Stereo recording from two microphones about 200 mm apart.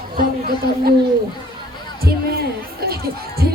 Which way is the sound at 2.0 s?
50° right (ahead or behind).